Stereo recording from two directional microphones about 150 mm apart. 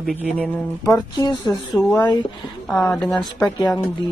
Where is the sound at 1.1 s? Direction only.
30° left (ahead or behind).